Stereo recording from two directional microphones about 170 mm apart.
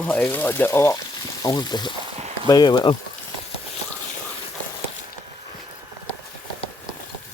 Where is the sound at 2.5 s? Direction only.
25° left (ahead or behind).